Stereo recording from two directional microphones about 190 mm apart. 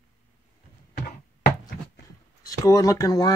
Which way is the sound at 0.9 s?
55° left (ahead or behind).